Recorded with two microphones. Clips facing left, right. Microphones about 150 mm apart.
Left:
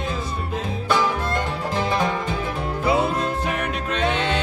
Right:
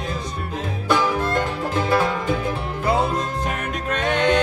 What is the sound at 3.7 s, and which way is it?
Music, 50° right (ahead or behind).